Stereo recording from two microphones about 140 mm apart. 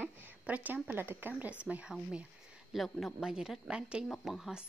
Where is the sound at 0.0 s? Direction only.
15° right (ahead or behind).